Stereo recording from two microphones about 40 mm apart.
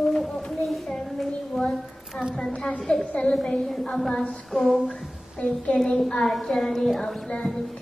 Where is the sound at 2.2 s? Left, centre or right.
Left.